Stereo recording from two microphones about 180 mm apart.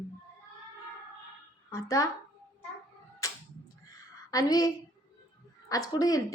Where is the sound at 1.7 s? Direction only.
20° left (ahead or behind).